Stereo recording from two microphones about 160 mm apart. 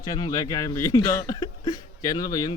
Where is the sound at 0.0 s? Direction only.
25° left (ahead or behind).